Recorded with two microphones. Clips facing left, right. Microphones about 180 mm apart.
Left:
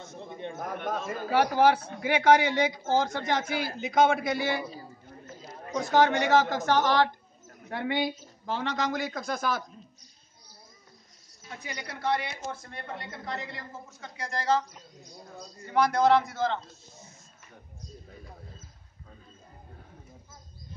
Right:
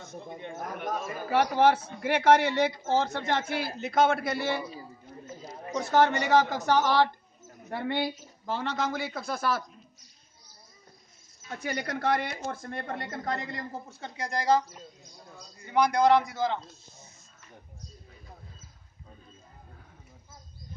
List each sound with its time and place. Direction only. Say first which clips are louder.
0.7 s a man's voice: even; 5° right (ahead or behind)
5.8 s a man's voice: left 1 dB; 5° right (ahead or behind)
11.7 s speech: right 2 dB; 50° right (ahead or behind); by 14.8 s 10° right (ahead or behind)
15.6 s a man's voice: even; centre (ahead or behind)